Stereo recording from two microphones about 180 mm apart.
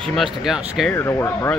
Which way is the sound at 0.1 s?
Centre (ahead or behind).